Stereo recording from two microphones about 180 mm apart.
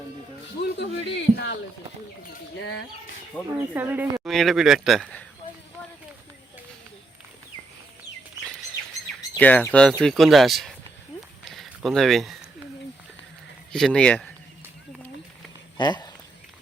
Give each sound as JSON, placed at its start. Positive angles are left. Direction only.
{"t": 0.6, "sound": "speech", "side_deg": 70}
{"t": 3.3, "sound": "speech", "side_deg": 10}
{"t": 3.8, "sound": "speech", "side_deg": -10}
{"t": 9.4, "sound": "speech", "side_deg": 10}
{"t": 11.4, "sound": "a sound", "side_deg": 0}
{"t": 13.7, "sound": "speech", "side_deg": 5}
{"t": 15.8, "sound": "speech", "side_deg": 25}